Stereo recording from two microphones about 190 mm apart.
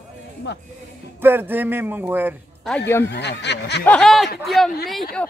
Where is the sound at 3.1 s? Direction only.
65° left (ahead or behind).